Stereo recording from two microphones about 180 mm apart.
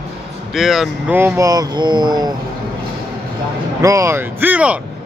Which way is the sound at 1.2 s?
15° right (ahead or behind).